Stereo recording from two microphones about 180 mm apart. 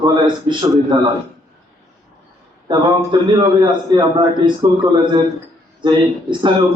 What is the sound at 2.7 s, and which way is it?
A man's voice, 25° right (ahead or behind).